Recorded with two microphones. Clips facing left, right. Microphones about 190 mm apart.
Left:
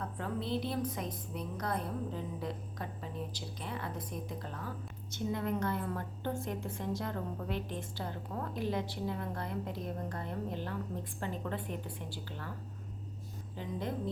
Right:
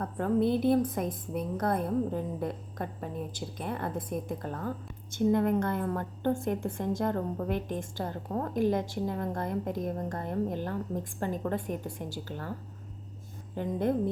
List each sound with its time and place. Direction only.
0.0 s a woman's voice: 50° right (ahead or behind)
13.6 s a woman's voice: 55° right (ahead or behind)